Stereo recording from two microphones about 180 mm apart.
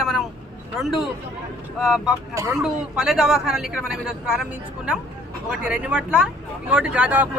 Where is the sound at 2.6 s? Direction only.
5° right (ahead or behind).